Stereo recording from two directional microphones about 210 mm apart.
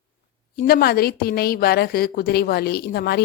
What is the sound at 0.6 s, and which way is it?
A woman's voice, 45° left (ahead or behind).